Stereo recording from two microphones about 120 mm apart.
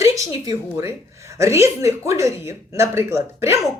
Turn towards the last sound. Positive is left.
turn(degrees=-25)  # may be behind; listen again after turning